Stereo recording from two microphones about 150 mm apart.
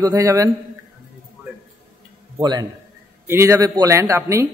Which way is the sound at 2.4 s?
30° right (ahead or behind).